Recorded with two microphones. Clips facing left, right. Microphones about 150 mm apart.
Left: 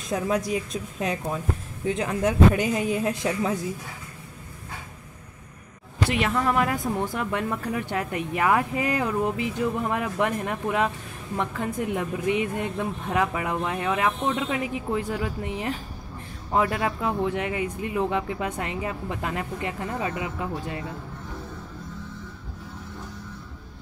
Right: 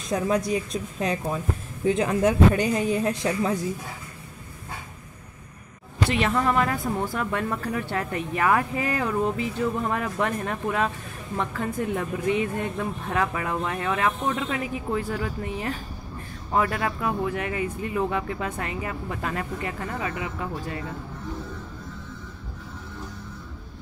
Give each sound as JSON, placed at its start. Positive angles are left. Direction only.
{"t": 0.1, "sound": "speech", "side_deg": 5}
{"t": 2.5, "sound": "speech", "side_deg": 5}
{"t": 6.0, "sound": "a woman's voice", "side_deg": 10}